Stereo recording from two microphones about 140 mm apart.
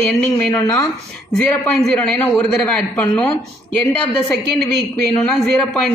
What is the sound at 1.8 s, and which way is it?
A man's voice, 5° left (ahead or behind).